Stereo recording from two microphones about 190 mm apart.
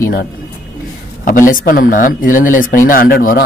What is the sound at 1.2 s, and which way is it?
Speech, 45° left (ahead or behind).